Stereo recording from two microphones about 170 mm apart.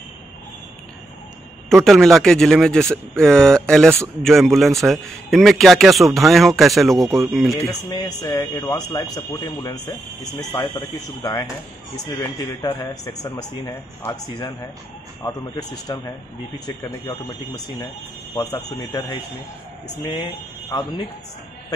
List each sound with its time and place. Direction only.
1.7 s a man's voice: centre (ahead or behind)
7.5 s speech: 25° left (ahead or behind)
12.6 s speech: 25° left (ahead or behind)
18.3 s speech: 20° left (ahead or behind)